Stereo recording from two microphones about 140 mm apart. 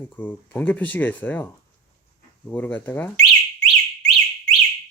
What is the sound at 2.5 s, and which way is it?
Speech, 15° left (ahead or behind).